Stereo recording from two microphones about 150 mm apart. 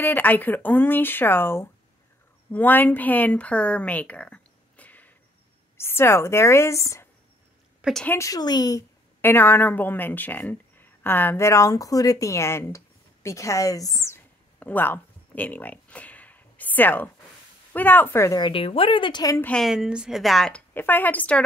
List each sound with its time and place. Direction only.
0.0 s speech: 10° left (ahead or behind)
7.8 s a woman's voice: 5° left (ahead or behind)
8.2 s speech: 25° left (ahead or behind)
9.2 s speech: 15° left (ahead or behind)
18.4 s speech: 40° left (ahead or behind)
19.4 s a woman's voice: 5° left (ahead or behind)